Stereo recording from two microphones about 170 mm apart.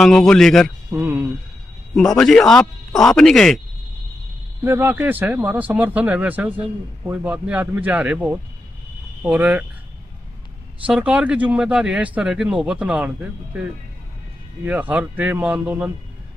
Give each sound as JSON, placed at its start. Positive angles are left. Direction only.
{"t": 0.0, "sound": "a man's voice", "side_deg": 5}
{"t": 0.9, "sound": "speech", "side_deg": -15}
{"t": 2.0, "sound": "a man's voice", "side_deg": 5}
{"t": 4.6, "sound": "speech", "side_deg": -15}
{"t": 10.9, "sound": "speech", "side_deg": -5}